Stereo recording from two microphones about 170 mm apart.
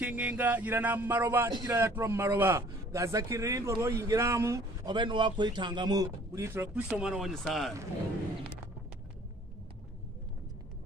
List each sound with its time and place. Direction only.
0.0 s a man's voice: 10° right (ahead or behind)